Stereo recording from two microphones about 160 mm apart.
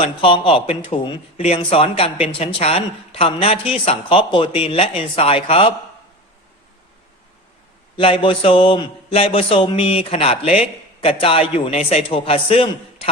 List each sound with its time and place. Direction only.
0.0 s speech: 35° left (ahead or behind)
7.9 s speech: 35° left (ahead or behind)